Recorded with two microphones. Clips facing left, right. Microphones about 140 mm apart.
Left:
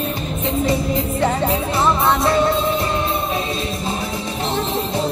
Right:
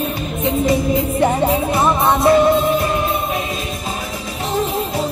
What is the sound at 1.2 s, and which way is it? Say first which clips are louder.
Music: right 3 dB; 15° right (ahead or behind).